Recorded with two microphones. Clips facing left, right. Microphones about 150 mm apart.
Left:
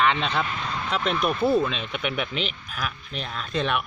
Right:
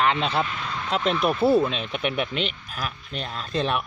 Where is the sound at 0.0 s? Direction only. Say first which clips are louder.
Right 1 dB; 35° right (ahead or behind).